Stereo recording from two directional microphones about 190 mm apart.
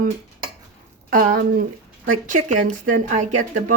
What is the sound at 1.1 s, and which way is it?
Speech, 50° right (ahead or behind).